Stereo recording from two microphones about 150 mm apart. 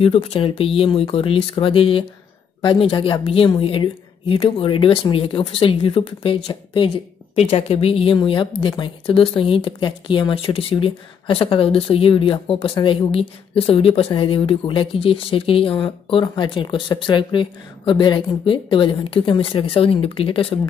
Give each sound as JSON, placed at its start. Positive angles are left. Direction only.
{"t": 0.0, "sound": "a woman's voice", "side_deg": 40}